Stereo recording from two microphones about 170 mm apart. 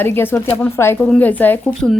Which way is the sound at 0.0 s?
10° left (ahead or behind).